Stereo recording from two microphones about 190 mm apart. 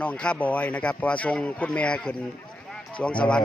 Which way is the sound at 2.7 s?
5° left (ahead or behind).